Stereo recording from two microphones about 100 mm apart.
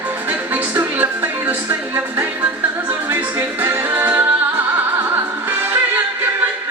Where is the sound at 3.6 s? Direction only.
20° right (ahead or behind).